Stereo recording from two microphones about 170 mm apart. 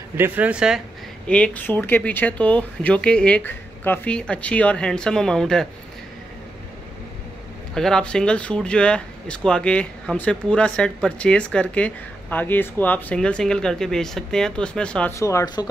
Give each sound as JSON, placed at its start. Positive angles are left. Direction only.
{"t": 0.2, "sound": "speech", "side_deg": -10}
{"t": 1.2, "sound": "speech", "side_deg": 5}
{"t": 7.7, "sound": "speech", "side_deg": 5}
{"t": 15.1, "sound": "speech", "side_deg": 20}